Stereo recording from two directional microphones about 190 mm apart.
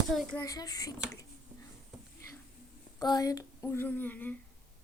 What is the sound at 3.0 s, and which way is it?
Speech, 20° left (ahead or behind).